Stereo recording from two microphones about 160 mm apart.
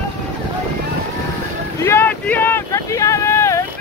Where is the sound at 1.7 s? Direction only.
15° left (ahead or behind).